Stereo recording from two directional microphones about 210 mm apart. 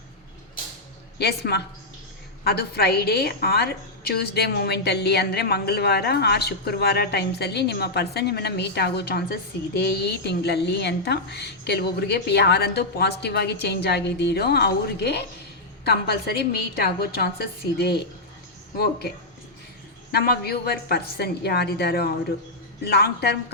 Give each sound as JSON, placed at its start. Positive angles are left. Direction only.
{"t": 1.2, "sound": "a woman's voice", "side_deg": 50}